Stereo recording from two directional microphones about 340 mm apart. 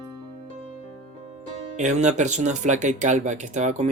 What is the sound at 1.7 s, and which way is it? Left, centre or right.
Speech, right.